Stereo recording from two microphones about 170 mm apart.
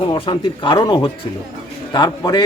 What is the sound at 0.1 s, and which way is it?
A man's voice, 30° left (ahead or behind).